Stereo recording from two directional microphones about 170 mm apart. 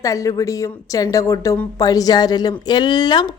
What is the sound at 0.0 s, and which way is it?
A woman's voice, 20° left (ahead or behind).